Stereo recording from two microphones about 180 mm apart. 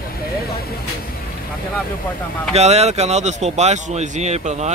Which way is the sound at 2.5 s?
35° right (ahead or behind).